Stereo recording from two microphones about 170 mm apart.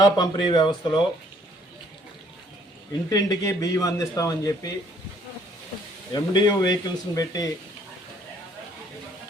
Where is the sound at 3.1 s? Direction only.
20° left (ahead or behind).